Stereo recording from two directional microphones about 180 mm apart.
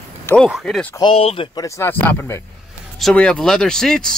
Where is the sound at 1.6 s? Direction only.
15° left (ahead or behind).